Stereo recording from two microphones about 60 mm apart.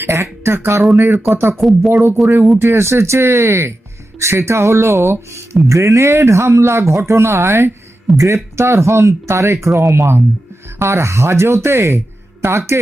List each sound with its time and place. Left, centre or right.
0.0 s speech: right
1.5 s speech: centre
1.9 s speech: right
8.1 s speech: right
9.9 s speech: right